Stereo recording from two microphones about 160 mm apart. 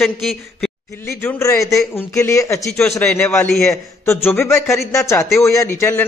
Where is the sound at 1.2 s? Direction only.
20° left (ahead or behind).